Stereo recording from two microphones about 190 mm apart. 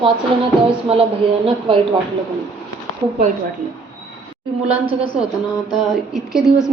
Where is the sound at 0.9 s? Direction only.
30° right (ahead or behind).